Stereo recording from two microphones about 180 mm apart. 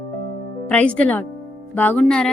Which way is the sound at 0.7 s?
5° left (ahead or behind).